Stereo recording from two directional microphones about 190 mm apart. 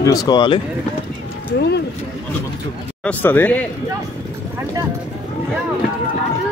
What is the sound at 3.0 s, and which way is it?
Speech, 10° left (ahead or behind).